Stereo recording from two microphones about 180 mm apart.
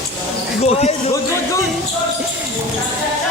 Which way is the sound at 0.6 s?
35° left (ahead or behind).